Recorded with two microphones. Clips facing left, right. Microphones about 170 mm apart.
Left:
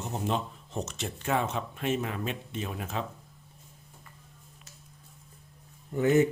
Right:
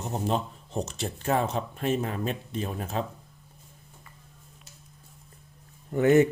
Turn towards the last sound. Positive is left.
turn(degrees=-65)  # may be behind; listen again after turning